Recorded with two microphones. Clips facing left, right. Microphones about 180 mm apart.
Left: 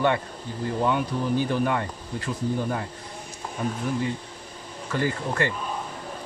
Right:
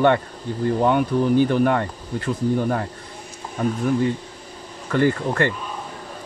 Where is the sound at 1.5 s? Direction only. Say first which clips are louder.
Right 6 dB; 55° right (ahead or behind).